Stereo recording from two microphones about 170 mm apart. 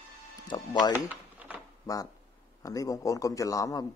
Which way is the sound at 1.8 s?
20° left (ahead or behind).